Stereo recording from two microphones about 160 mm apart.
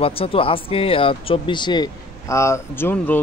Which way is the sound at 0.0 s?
35° left (ahead or behind).